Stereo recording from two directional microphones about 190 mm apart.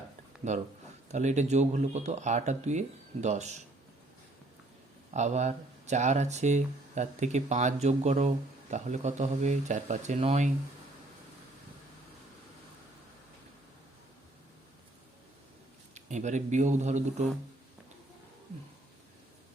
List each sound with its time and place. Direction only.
0.5 s speech: 40° right (ahead or behind)
5.1 s speech: 40° right (ahead or behind)
16.0 s speech: 40° right (ahead or behind)